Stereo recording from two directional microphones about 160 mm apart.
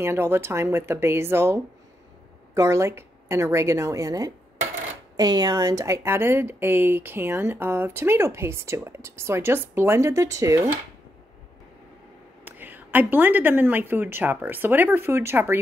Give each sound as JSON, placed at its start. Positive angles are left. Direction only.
{"t": 0.0, "sound": "a woman's voice", "side_deg": -15}
{"t": 12.4, "sound": "speech", "side_deg": -10}